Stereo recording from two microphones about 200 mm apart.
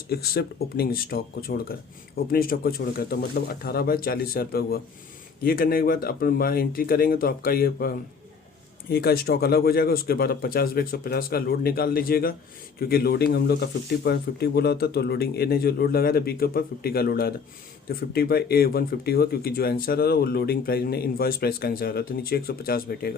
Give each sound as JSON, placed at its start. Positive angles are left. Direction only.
{"t": 0.1, "sound": "speech", "side_deg": 50}